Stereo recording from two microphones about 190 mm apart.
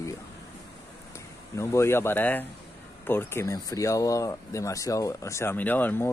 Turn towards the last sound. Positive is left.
turn(degrees=10)  # may be behind; listen again after turning